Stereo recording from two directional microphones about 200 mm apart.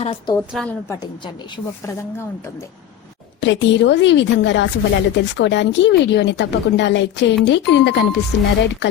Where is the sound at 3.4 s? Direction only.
65° left (ahead or behind).